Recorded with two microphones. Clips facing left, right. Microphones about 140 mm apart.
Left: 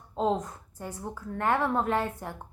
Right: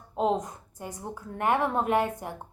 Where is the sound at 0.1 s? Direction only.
15° right (ahead or behind).